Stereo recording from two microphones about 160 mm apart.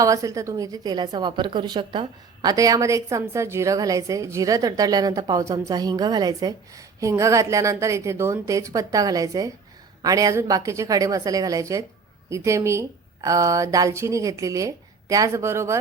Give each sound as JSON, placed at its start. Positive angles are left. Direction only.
{"t": 0.0, "sound": "a woman's voice", "side_deg": -20}